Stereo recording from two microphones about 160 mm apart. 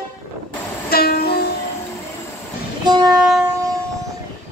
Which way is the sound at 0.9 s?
70° left (ahead or behind).